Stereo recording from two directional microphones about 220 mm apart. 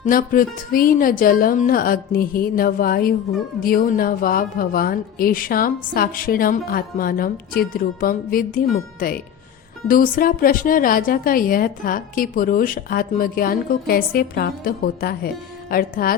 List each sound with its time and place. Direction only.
0.0 s a woman's voice: 40° left (ahead or behind)